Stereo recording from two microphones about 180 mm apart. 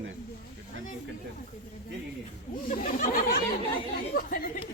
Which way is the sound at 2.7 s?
45° left (ahead or behind).